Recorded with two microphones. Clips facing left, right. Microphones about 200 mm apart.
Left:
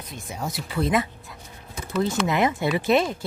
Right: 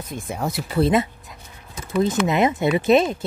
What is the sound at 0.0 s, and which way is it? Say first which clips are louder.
Speech: right 5 dB; 50° right (ahead or behind).